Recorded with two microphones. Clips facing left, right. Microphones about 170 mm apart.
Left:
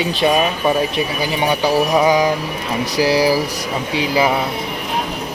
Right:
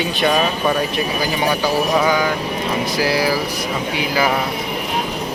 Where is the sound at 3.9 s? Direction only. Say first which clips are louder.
Left 4 dB; 30° left (ahead or behind).